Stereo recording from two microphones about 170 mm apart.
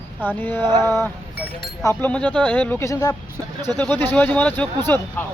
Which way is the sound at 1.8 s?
15° left (ahead or behind).